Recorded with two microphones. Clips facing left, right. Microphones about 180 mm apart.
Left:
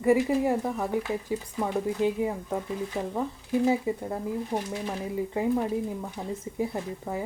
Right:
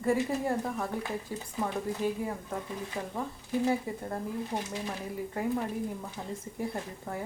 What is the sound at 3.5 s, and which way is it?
Speech, 15° left (ahead or behind).